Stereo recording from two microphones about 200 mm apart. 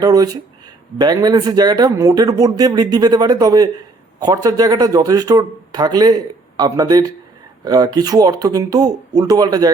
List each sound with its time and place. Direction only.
0.0 s speech: 20° right (ahead or behind)